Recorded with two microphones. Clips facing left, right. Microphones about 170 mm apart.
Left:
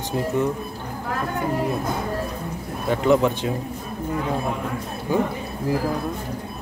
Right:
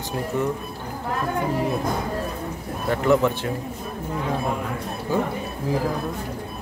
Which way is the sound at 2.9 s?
20° left (ahead or behind).